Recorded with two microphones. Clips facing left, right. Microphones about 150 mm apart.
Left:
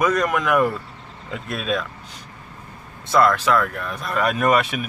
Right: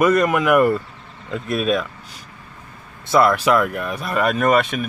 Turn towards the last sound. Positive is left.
turn(degrees=5)  # may be behind; listen again after turning